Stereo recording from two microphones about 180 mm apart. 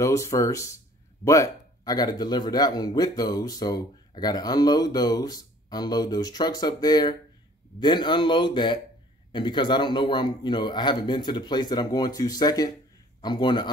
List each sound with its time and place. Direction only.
0.0 s speech: 15° left (ahead or behind)